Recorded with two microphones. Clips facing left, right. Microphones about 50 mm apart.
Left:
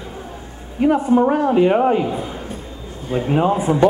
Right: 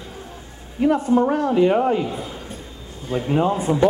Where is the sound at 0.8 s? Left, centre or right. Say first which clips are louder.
Left 3 dB; centre.